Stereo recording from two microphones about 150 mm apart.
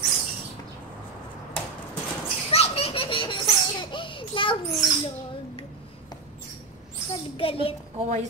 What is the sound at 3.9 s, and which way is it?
Speech, 35° left (ahead or behind).